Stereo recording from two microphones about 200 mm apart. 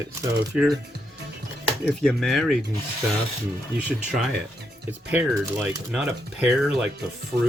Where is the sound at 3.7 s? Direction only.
5° right (ahead or behind).